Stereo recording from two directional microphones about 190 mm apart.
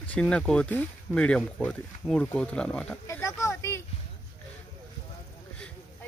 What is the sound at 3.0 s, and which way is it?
Oink, 15° left (ahead or behind).